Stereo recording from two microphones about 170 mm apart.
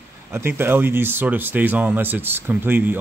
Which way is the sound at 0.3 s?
15° right (ahead or behind).